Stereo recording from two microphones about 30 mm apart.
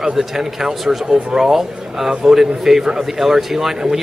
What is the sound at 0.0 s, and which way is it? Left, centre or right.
Speech, centre.